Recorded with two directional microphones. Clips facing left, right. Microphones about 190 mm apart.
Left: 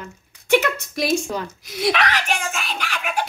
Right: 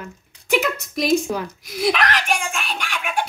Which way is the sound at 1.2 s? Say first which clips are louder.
Right 2 dB; 5° right (ahead or behind).